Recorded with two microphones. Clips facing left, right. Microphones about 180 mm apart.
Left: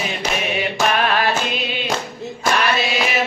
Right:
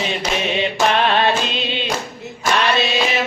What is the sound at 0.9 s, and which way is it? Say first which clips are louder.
Music: right 2 dB; 25° right (ahead or behind).